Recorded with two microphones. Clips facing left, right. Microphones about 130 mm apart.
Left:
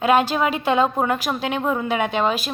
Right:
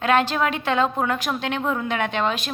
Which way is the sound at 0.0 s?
10° left (ahead or behind).